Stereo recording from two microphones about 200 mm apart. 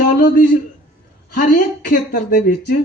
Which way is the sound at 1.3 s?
50° left (ahead or behind).